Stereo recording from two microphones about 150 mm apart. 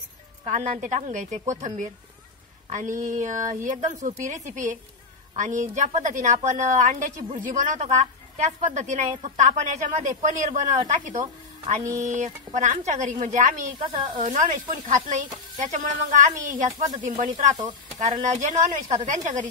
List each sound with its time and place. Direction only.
0.5 s a woman's voice: 50° right (ahead or behind)
12.0 s a woman's voice: 55° right (ahead or behind)
13.8 s speech: 35° right (ahead or behind)
14.2 s a woman's voice: 55° right (ahead or behind)